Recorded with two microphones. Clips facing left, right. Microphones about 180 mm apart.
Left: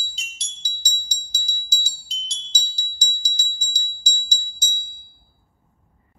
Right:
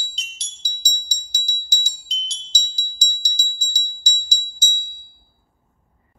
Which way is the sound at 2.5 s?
10° right (ahead or behind).